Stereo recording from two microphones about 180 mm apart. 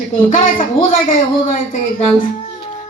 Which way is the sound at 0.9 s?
45° left (ahead or behind).